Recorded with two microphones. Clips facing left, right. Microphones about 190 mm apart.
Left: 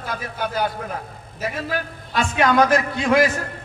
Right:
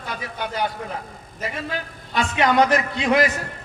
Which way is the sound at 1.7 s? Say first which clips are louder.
Left 2 dB; 20° right (ahead or behind).